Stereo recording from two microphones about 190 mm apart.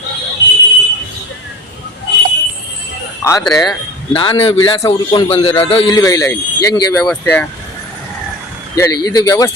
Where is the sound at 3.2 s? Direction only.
15° left (ahead or behind).